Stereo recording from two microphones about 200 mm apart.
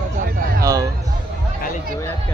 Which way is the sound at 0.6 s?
15° right (ahead or behind).